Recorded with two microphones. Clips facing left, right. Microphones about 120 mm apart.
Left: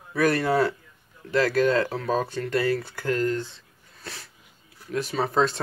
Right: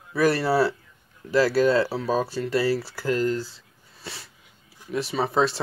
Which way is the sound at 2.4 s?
30° right (ahead or behind).